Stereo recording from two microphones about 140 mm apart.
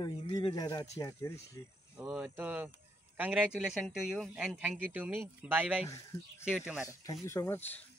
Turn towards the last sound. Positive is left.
turn(degrees=15)  # may be behind; listen again after turning